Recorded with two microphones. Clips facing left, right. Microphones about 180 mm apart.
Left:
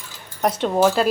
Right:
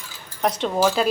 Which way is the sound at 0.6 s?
5° left (ahead or behind).